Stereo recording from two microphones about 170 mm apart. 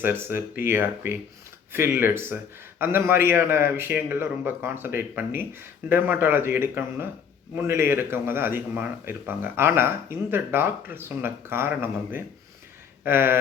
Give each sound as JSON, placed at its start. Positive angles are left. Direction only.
{"t": 0.0, "sound": "speech", "side_deg": -15}